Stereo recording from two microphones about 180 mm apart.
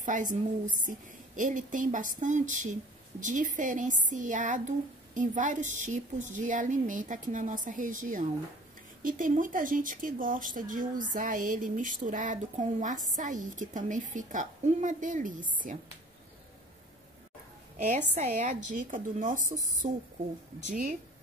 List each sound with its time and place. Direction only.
0.0 s a woman's voice: 45° right (ahead or behind)
17.8 s a woman's voice: 40° right (ahead or behind)